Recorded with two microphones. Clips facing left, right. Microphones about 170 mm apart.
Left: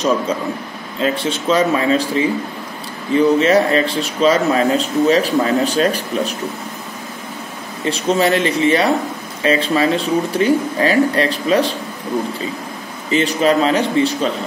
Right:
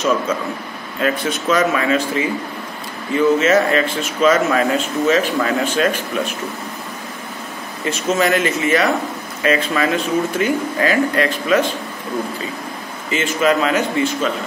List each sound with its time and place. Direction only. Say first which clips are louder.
0.9 s a man's voice: left 1 dB; 30° left (ahead or behind)
7.8 s a man's voice: left 2 dB; 30° left (ahead or behind)
13.1 s a man's voice: left 2 dB; 35° left (ahead or behind)